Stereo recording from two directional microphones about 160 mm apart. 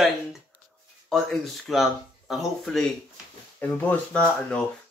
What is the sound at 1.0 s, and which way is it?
Speech, centre (ahead or behind).